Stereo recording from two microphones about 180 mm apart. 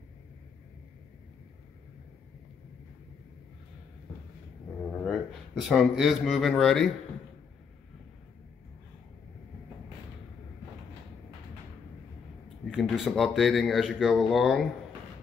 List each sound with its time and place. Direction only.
5.0 s a man's voice: centre (ahead or behind)
12.6 s speech: centre (ahead or behind)